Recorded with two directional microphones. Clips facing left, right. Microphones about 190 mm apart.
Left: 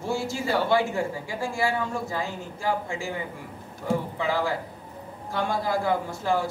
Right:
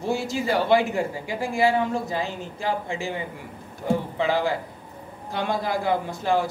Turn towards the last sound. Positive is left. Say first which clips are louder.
# right 2 dB
turn(degrees=-20)  # may be behind; listen again after turning